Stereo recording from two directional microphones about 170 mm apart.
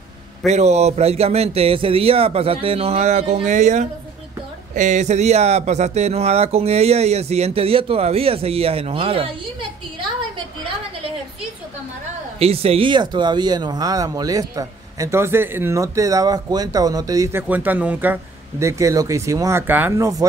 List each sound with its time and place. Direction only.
0.5 s speech: 40° right (ahead or behind)
12.4 s speech: 35° right (ahead or behind); by 20.2 s 20° right (ahead or behind)